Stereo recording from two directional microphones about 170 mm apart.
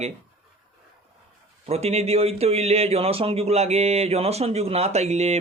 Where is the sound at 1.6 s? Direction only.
40° right (ahead or behind).